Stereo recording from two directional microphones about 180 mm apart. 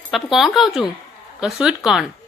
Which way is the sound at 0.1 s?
Centre (ahead or behind).